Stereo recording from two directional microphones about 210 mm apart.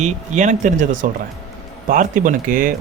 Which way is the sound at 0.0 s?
35° right (ahead or behind).